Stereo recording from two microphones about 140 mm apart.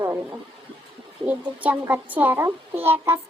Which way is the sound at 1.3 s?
10° right (ahead or behind).